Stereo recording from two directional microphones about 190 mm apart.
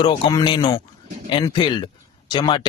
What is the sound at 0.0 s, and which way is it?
Speech, 25° left (ahead or behind).